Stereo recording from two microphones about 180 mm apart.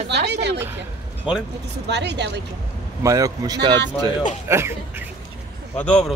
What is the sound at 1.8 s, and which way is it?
Speech, 70° right (ahead or behind).